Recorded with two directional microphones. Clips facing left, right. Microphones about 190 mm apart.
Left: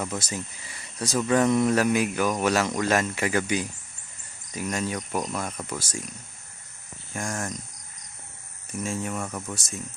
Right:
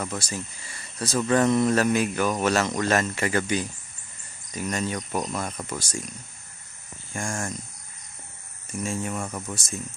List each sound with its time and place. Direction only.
0.2 s speech: 15° left (ahead or behind)
7.1 s speech: 5° left (ahead or behind)
8.8 s speech: centre (ahead or behind)